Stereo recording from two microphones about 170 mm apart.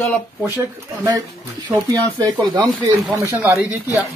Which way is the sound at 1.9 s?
25° right (ahead or behind).